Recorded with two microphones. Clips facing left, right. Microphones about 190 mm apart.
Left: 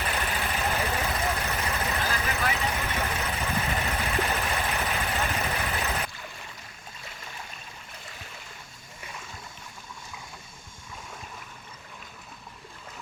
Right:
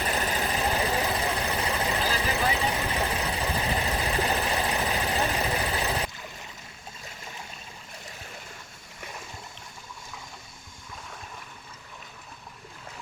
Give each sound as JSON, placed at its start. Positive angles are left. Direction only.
{"t": 0.0, "sound": "vehicle", "side_deg": -35}
{"t": 5.5, "sound": "jackhammer", "side_deg": -30}